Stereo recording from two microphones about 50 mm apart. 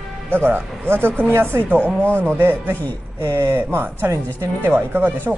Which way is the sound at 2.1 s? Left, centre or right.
Right.